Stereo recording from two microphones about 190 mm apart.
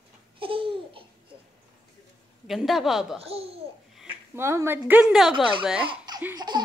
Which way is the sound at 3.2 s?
30° right (ahead or behind).